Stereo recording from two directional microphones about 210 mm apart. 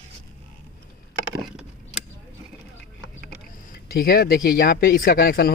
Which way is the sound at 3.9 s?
45° left (ahead or behind).